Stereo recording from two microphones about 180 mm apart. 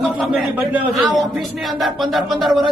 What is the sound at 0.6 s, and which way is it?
Speech, centre (ahead or behind).